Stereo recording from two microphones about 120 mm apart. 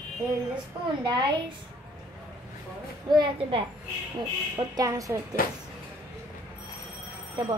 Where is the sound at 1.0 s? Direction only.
35° right (ahead or behind).